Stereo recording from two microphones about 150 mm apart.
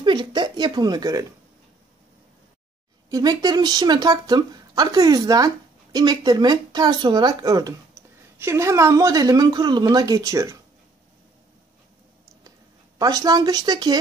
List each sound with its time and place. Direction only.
0.0 s speech: 30° right (ahead or behind)
3.1 s speech: 25° right (ahead or behind)
13.0 s speech: 25° right (ahead or behind)